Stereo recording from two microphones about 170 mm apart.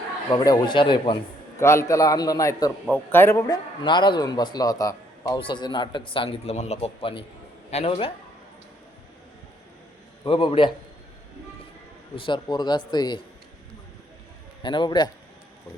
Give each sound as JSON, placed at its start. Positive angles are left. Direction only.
{"t": 0.3, "sound": "a man's voice", "side_deg": 20}
{"t": 1.5, "sound": "a man's voice", "side_deg": 15}
{"t": 10.2, "sound": "a man's voice", "side_deg": 30}
{"t": 12.1, "sound": "a man's voice", "side_deg": 30}
{"t": 14.6, "sound": "a man's voice", "side_deg": 25}